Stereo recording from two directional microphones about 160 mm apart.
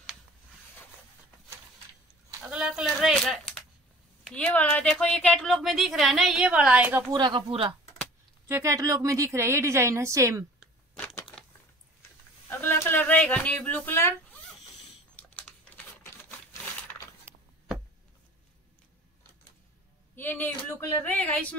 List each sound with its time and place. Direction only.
2.4 s speech: 5° right (ahead or behind)
7.1 s a woman's voice: 30° right (ahead or behind)
8.5 s a woman's voice: 20° right (ahead or behind)
11.0 s crushing: 5° left (ahead or behind)
12.4 s a sound: 15° left (ahead or behind)
20.2 s speech: 15° left (ahead or behind)